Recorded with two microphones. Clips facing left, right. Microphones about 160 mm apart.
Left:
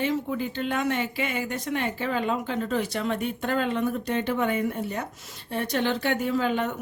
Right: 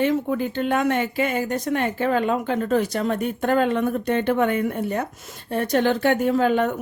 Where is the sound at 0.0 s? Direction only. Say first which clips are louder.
Right 5 dB; 55° right (ahead or behind).